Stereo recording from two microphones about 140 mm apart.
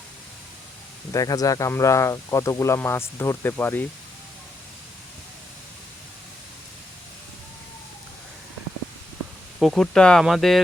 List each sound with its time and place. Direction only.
1.1 s speech: 25° left (ahead or behind)
9.6 s speech: centre (ahead or behind)